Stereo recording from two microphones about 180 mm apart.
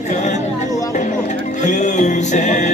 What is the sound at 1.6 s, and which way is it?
Music, 40° left (ahead or behind).